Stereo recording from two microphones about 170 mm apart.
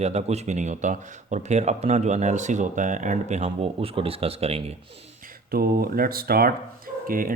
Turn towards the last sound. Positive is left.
turn(degrees=-55)  # may be behind; listen again after turning